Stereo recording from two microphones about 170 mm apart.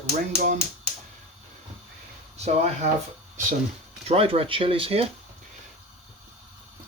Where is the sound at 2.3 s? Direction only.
40° right (ahead or behind).